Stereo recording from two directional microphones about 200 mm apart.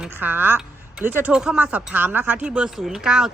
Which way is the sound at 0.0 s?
10° right (ahead or behind).